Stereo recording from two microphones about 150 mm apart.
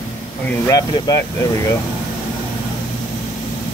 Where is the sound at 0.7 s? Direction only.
25° left (ahead or behind).